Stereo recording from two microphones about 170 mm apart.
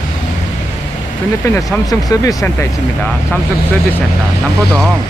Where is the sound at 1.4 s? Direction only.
20° left (ahead or behind).